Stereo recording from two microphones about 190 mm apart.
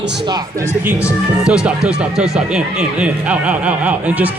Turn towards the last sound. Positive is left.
turn(degrees=-10)  # may be behind; listen again after turning